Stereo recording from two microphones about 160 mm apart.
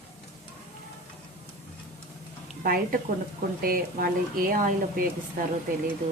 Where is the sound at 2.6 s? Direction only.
70° right (ahead or behind).